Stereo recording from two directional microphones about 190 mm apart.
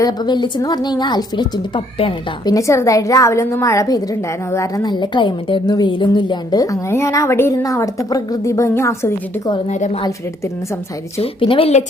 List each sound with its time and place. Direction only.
0.0 s a woman's voice: 20° left (ahead or behind)
9.6 s a woman's voice: 40° left (ahead or behind)
11.2 s a woman's voice: 30° left (ahead or behind)